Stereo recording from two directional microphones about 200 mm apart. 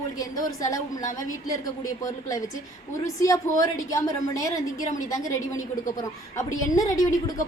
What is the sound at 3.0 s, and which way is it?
A woman's voice, 15° left (ahead or behind).